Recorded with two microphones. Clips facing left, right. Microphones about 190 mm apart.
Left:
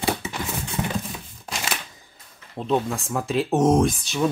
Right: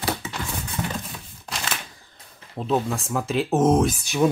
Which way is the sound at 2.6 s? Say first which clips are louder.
Even; centre (ahead or behind).